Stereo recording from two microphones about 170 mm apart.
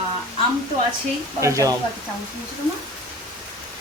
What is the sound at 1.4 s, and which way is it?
Speech, 20° right (ahead or behind).